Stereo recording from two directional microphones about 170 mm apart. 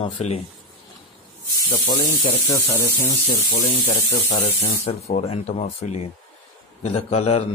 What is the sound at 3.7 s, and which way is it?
A man's voice, 40° left (ahead or behind).